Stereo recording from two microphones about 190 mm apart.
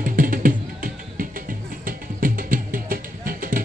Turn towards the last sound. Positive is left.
turn(degrees=-45)  # may be behind; listen again after turning